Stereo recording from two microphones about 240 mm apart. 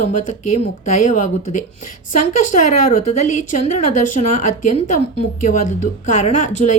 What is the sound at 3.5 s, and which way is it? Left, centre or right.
Speech, left.